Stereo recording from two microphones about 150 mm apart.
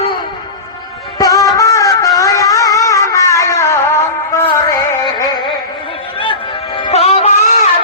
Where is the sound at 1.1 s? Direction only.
25° left (ahead or behind).